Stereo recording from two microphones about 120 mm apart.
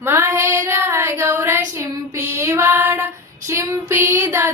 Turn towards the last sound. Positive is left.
turn(degrees=-20)  # may be behind; listen again after turning